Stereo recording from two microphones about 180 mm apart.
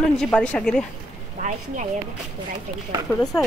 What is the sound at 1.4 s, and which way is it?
Speech, 40° right (ahead or behind).